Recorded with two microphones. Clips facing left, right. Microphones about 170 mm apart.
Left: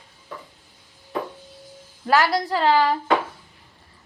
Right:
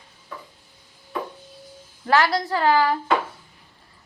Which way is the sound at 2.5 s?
25° left (ahead or behind).